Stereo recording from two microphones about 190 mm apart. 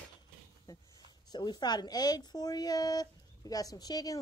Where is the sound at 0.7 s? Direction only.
15° left (ahead or behind).